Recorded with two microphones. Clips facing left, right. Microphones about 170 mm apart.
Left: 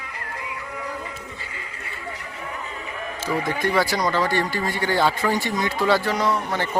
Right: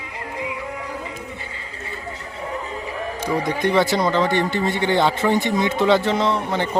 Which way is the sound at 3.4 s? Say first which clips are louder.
Right 4 dB; 20° right (ahead or behind).